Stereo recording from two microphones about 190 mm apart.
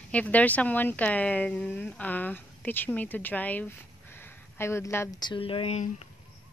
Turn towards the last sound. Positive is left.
turn(degrees=30)  # may be behind; listen again after turning